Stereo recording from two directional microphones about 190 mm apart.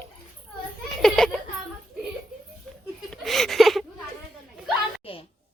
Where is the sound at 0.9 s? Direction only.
Centre (ahead or behind).